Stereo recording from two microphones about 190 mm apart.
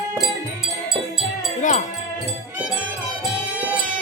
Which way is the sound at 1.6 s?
40° left (ahead or behind).